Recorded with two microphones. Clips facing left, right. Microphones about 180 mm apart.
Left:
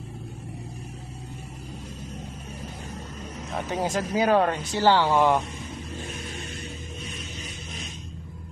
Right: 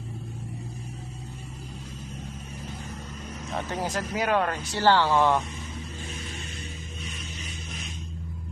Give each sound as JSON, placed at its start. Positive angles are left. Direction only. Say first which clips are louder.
{"t": 3.7, "sound": "speech", "louder": "left 5 dB", "side_deg": 20}